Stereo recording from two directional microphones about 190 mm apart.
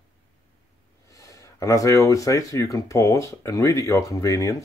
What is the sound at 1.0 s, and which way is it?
Speech, 15° left (ahead or behind).